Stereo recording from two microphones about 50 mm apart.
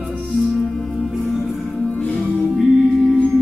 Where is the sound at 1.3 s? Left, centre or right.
Centre.